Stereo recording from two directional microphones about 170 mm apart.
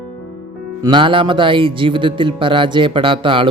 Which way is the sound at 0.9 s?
30° right (ahead or behind).